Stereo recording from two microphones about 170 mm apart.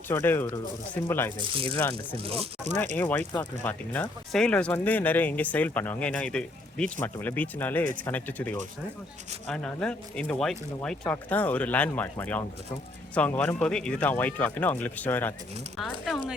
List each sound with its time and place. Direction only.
0.1 s speech: 15° left (ahead or behind)
1.4 s speech: 30° right (ahead or behind)
1.7 s speech: 15° left (ahead or behind)
2.2 s speech: 35° right (ahead or behind)
2.7 s speech: 10° left (ahead or behind)